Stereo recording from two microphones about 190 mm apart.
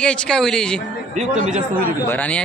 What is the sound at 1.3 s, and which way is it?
Speech, 40° right (ahead or behind).